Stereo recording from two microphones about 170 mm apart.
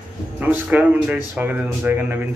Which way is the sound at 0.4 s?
10° right (ahead or behind).